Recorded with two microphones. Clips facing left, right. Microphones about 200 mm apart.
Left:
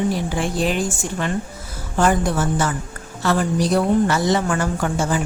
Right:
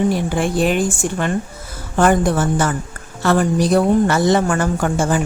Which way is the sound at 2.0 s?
50° right (ahead or behind).